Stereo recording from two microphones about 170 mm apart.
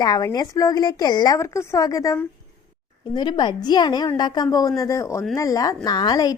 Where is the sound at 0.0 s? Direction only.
20° left (ahead or behind).